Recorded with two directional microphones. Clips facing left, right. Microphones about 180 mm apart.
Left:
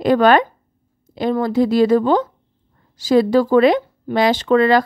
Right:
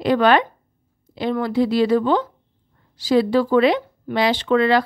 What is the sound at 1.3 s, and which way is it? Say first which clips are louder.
A woman's voice: left 3 dB; 45° left (ahead or behind).